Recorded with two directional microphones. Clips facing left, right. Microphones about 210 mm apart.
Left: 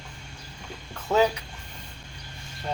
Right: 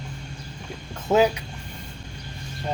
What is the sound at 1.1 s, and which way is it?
Speech, 25° right (ahead or behind).